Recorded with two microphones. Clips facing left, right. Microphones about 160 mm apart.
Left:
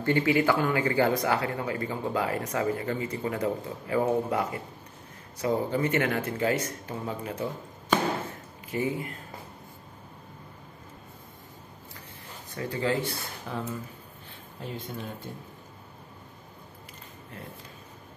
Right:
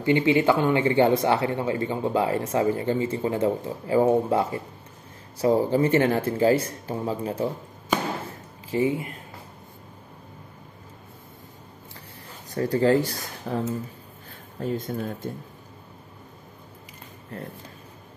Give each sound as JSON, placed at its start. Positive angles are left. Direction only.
{"t": 0.0, "sound": "speech", "side_deg": -20}
{"t": 8.6, "sound": "speech", "side_deg": -25}
{"t": 12.4, "sound": "speech", "side_deg": -40}